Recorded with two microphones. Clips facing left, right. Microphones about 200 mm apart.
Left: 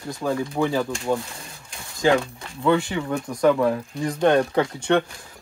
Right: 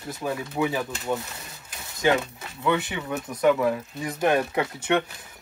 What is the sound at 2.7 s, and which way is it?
Speech, 20° right (ahead or behind).